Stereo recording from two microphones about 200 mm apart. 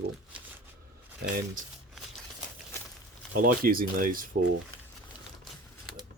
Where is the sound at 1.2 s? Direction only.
50° right (ahead or behind).